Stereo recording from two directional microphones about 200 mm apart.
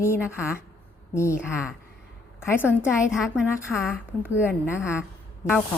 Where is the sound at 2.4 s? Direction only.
10° left (ahead or behind).